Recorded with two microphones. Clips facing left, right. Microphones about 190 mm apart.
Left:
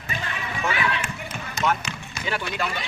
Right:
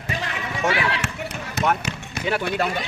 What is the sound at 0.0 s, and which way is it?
Basketball bounce, 80° right.